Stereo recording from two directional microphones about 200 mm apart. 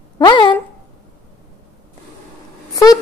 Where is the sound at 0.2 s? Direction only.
25° left (ahead or behind).